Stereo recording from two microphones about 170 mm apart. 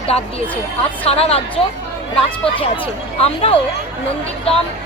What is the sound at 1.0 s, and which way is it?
Speech, 35° left (ahead or behind).